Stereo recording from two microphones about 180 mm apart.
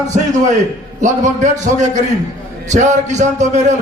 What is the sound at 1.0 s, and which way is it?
A man's voice, 45° right (ahead or behind).